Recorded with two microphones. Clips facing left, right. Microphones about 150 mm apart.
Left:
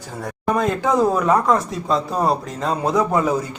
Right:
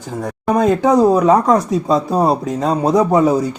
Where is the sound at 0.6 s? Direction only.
20° right (ahead or behind).